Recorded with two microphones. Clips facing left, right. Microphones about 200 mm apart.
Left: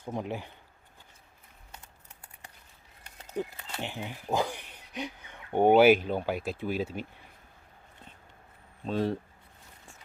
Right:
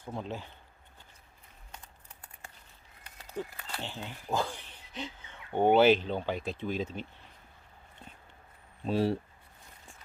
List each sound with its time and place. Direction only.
0.0 s speech: 15° left (ahead or behind)
3.2 s speech: 20° left (ahead or behind)
8.9 s speech: 10° right (ahead or behind)